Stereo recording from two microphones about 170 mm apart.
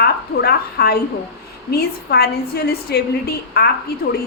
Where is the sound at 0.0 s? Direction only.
65° left (ahead or behind).